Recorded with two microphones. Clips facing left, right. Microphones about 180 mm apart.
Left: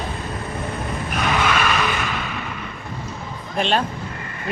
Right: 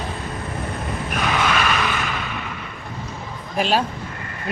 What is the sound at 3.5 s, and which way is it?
Speech, 5° right (ahead or behind).